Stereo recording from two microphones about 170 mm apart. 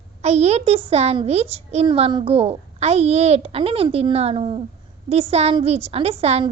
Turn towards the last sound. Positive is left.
turn(degrees=-35)  # may be behind; listen again after turning